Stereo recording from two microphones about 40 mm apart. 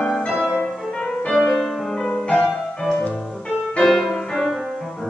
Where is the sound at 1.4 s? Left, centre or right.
Centre.